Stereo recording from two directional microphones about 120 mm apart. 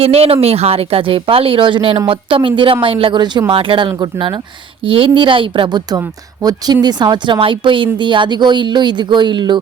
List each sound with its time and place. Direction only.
0.0 s speech: 55° right (ahead or behind); by 4.4 s 40° right (ahead or behind)
4.8 s speech: 50° right (ahead or behind)